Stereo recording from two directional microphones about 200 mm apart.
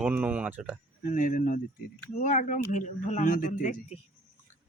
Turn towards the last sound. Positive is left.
turn(degrees=40)  # may be behind; listen again after turning